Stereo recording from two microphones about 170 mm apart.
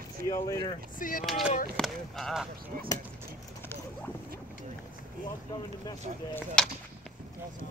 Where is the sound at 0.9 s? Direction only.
55° left (ahead or behind).